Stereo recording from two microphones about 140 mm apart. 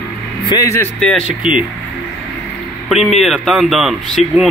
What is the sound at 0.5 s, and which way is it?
Speech, 25° left (ahead or behind).